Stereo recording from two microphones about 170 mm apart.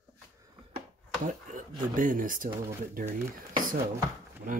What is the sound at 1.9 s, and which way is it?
Speech, 50° right (ahead or behind).